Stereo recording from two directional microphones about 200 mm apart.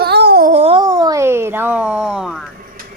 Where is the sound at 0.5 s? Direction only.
30° right (ahead or behind).